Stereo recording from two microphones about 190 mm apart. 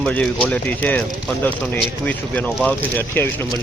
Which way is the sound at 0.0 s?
5° left (ahead or behind).